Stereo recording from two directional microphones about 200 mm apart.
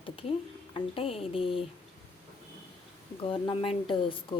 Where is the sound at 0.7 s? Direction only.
25° left (ahead or behind).